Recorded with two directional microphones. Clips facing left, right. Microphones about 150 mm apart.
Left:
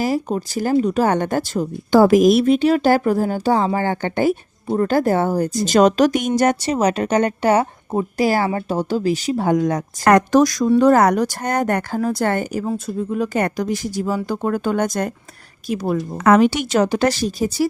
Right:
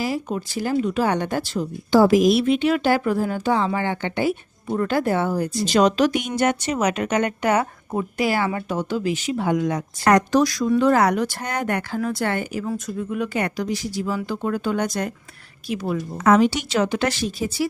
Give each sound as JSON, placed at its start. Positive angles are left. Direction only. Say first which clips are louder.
{"t": 0.0, "sound": "speech", "louder": "left 5 dB", "side_deg": 40}
{"t": 12.6, "sound": "speech", "louder": "left 4 dB", "side_deg": 30}
{"t": 16.0, "sound": "speech", "louder": "left 3 dB", "side_deg": 65}